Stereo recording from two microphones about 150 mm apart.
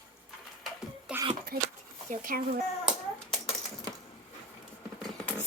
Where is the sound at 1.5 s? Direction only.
90° right.